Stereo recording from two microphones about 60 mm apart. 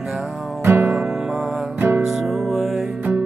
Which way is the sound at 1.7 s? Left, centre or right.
Right.